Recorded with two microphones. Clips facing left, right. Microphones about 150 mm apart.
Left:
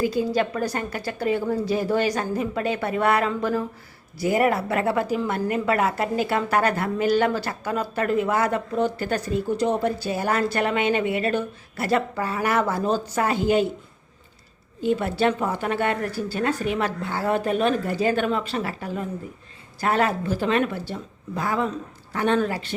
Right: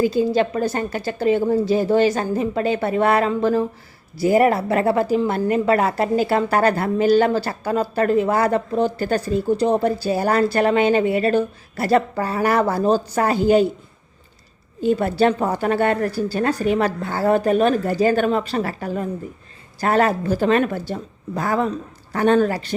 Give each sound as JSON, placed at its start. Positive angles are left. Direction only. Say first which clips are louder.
{"t": 0.0, "sound": "a woman's voice", "louder": "right 5 dB", "side_deg": -25}
{"t": 14.8, "sound": "a woman's voice", "louder": "right 5 dB", "side_deg": -40}